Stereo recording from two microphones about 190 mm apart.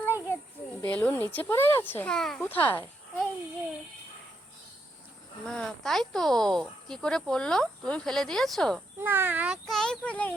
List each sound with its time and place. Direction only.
0.8 s speech: 10° left (ahead or behind)
5.5 s speech: 5° left (ahead or behind)
9.0 s speech: 10° right (ahead or behind); by 10.3 s 5° left (ahead or behind)